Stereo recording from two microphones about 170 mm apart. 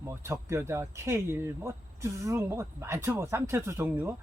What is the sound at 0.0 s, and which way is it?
Speech, 15° right (ahead or behind).